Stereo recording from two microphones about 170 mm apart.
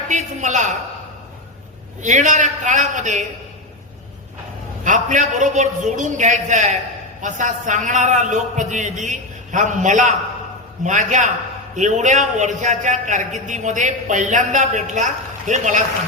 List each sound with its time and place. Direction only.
0.1 s a man's voice: 45° right (ahead or behind)
2.0 s a man's voice: 45° right (ahead or behind)
4.8 s a man's voice: 45° right (ahead or behind)